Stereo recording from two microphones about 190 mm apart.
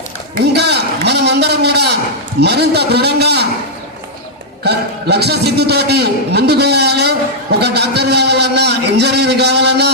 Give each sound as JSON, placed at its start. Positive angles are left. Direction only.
{"t": 0.5, "sound": "a sound", "side_deg": -60}
{"t": 2.4, "sound": "a man's voice", "side_deg": -60}
{"t": 4.6, "sound": "a man's voice", "side_deg": -60}